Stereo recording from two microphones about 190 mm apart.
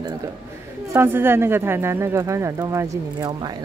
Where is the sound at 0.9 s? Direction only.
10° right (ahead or behind).